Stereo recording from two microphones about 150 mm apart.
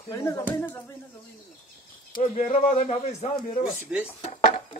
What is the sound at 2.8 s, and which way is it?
Speech, 45° left (ahead or behind).